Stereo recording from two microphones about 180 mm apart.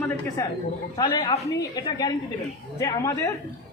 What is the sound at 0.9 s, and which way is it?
Speech, 25° left (ahead or behind).